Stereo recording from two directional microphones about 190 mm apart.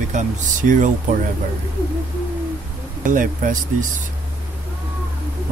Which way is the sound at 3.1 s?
45° right (ahead or behind).